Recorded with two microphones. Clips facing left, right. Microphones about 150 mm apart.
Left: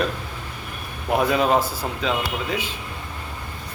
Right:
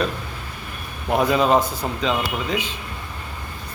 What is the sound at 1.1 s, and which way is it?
Speech, centre (ahead or behind).